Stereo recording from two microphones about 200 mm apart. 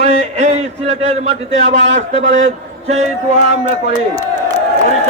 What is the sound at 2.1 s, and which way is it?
Speech, 40° right (ahead or behind).